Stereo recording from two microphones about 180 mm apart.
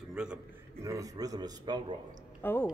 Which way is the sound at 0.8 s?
20° right (ahead or behind).